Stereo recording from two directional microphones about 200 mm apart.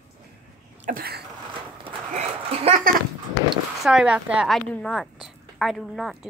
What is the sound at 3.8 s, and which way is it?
A woman's voice, centre (ahead or behind).